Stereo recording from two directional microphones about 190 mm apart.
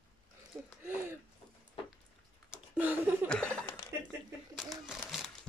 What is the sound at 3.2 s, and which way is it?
Chuckle, 5° left (ahead or behind).